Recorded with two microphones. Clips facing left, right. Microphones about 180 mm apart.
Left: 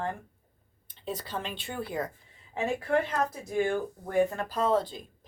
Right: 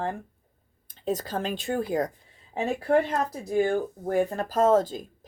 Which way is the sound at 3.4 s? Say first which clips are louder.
Right 7 dB; 35° right (ahead or behind).